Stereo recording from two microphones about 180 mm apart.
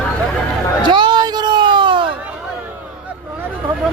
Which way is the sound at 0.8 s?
25° right (ahead or behind).